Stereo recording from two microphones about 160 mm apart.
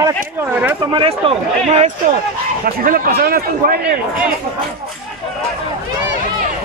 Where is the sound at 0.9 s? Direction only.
35° right (ahead or behind).